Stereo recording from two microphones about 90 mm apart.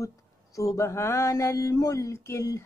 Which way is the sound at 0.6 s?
35° left (ahead or behind).